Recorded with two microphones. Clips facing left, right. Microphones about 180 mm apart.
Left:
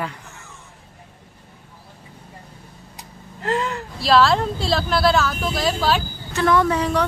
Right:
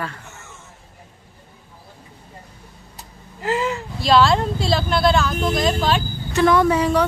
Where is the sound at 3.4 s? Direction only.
5° right (ahead or behind).